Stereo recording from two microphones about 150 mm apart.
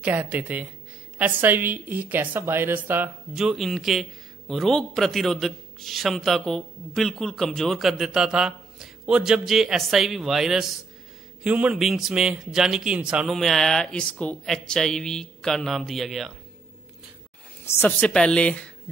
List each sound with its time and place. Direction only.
0.0 s a woman's voice: 10° right (ahead or behind)
17.6 s speech: 15° left (ahead or behind)